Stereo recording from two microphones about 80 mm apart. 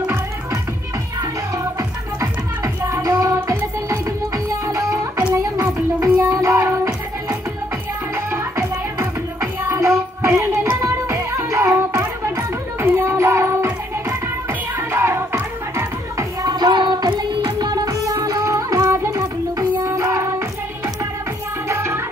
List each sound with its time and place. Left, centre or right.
1.8 s music: right
4.5 s music: right
5.3 s a sound: right
5.9 s music: right
14.8 s music: right
16.4 s music: right
18.1 s music: right